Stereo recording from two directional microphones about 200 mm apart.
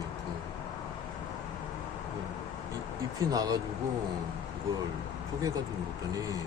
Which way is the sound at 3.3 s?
20° right (ahead or behind).